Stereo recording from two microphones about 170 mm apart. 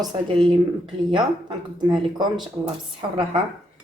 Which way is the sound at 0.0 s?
25° right (ahead or behind).